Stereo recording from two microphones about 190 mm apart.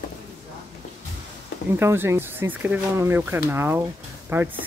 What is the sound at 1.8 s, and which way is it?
Speech, 15° right (ahead or behind).